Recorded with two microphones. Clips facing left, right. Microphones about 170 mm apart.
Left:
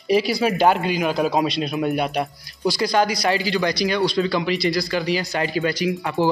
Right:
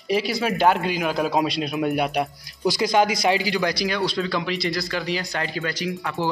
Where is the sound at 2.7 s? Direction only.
20° right (ahead or behind).